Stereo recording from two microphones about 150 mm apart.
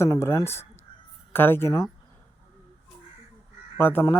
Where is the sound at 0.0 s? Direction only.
15° left (ahead or behind).